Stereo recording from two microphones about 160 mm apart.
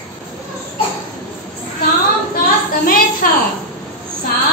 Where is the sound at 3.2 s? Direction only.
65° left (ahead or behind).